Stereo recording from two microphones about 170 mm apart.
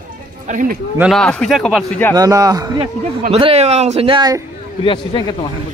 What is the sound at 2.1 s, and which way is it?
Speech, 20° right (ahead or behind).